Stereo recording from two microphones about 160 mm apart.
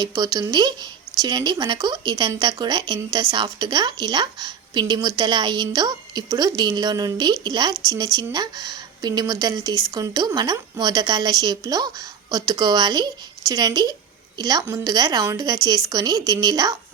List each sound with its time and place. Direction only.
0.0 s speech: 20° right (ahead or behind)